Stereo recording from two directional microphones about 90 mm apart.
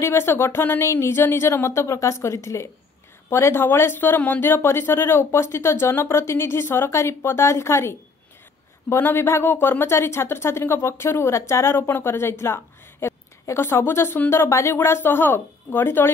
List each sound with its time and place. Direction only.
0.0 s speech: 25° left (ahead or behind)